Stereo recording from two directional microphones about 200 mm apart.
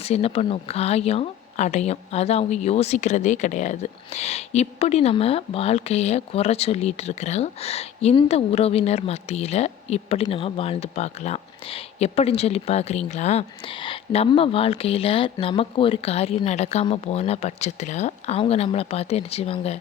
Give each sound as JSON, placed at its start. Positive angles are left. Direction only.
{"t": 0.0, "sound": "speech", "side_deg": 30}